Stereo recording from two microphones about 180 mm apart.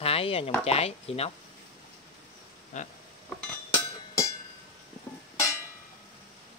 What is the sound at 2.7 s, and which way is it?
Speech, 40° left (ahead or behind).